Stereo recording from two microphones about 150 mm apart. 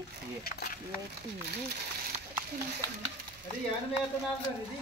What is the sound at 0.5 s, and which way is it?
Speech, 90° left.